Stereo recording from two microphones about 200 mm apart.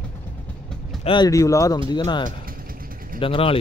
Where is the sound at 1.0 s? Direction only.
20° left (ahead or behind).